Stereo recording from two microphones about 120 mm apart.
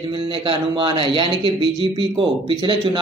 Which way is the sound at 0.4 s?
40° right (ahead or behind).